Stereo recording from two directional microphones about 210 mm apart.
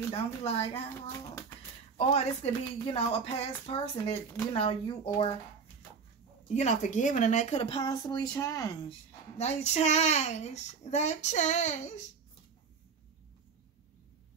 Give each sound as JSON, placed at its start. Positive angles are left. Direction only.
{"t": 0.1, "sound": "speech", "side_deg": 30}
{"t": 0.8, "sound": "a child's voice", "side_deg": 15}
{"t": 2.0, "sound": "speech", "side_deg": 30}
{"t": 6.5, "sound": "speech", "side_deg": 35}
{"t": 9.4, "sound": "a child's voice", "side_deg": 30}